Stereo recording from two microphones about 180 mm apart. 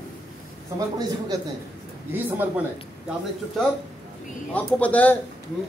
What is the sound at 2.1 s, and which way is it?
Speech, 10° right (ahead or behind).